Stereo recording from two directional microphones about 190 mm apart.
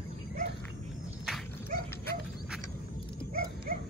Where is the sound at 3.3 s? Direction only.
50° right (ahead or behind).